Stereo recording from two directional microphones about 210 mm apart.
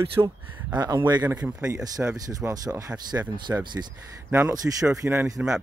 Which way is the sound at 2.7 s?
15° right (ahead or behind).